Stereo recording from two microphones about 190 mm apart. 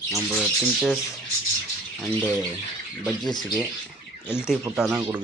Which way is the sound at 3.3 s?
20° left (ahead or behind).